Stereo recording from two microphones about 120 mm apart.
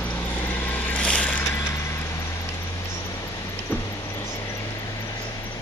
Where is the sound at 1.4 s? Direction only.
25° left (ahead or behind).